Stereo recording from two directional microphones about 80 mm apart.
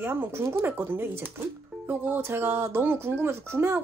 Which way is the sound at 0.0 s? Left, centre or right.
Right.